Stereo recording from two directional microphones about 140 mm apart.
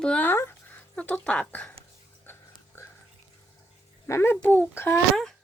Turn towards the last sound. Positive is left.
turn(degrees=15)  # may be behind; listen again after turning